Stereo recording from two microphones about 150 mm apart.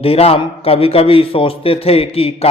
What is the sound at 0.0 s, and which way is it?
A man's voice, 40° left (ahead or behind).